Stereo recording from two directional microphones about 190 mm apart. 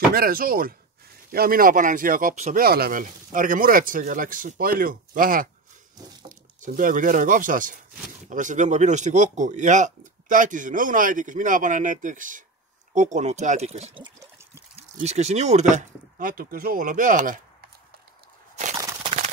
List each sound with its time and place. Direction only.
0.1 s speech: 50° right (ahead or behind)
2.6 s speech: 55° right (ahead or behind)